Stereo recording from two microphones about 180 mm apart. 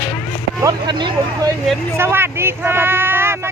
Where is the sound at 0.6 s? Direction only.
25° right (ahead or behind).